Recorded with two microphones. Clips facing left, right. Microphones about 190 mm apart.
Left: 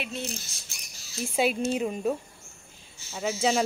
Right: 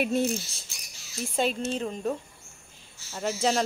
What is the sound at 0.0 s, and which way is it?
Bird, 45° right (ahead or behind).